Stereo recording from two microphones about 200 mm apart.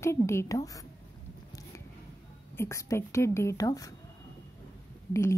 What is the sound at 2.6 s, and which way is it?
A woman's voice, 15° left (ahead or behind).